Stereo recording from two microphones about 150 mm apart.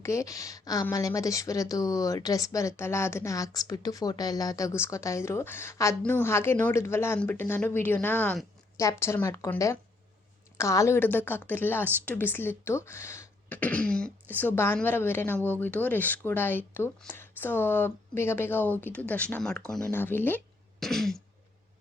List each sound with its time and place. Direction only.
0.0 s a woman's voice: 20° left (ahead or behind)
10.6 s a woman's voice: 20° left (ahead or behind)
20.7 s throat clearing: centre (ahead or behind)